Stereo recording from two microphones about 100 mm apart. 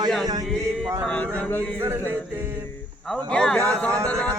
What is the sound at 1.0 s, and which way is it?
Speech, 15° left (ahead or behind).